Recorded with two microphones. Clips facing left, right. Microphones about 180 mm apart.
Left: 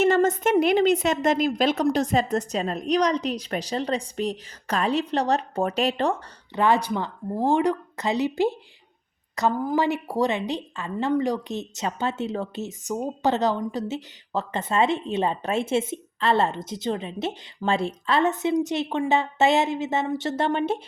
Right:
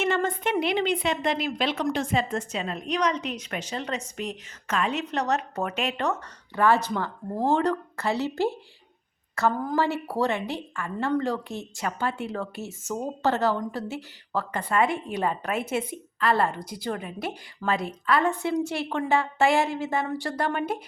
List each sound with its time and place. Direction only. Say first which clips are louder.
0.0 s a woman's voice: left 6 dB; 40° left (ahead or behind)
6.6 s speech: left 1 dB; 15° left (ahead or behind)
9.6 s speech: left 2 dB; 15° left (ahead or behind)